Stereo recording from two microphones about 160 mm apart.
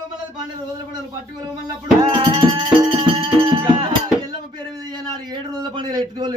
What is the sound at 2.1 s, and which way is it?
Music, 30° right (ahead or behind).